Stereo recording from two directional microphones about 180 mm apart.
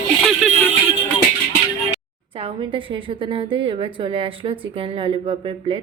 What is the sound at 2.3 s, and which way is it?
A woman's voice, 30° right (ahead or behind).